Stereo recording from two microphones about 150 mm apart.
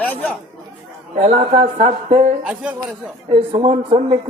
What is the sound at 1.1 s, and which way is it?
Speech, 45° right (ahead or behind).